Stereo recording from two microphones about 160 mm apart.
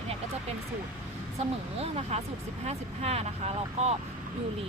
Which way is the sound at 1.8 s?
40° right (ahead or behind).